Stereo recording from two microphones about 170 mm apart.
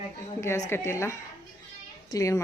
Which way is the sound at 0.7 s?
15° left (ahead or behind).